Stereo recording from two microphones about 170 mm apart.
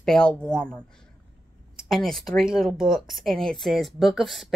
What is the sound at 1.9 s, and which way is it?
Speech, centre (ahead or behind).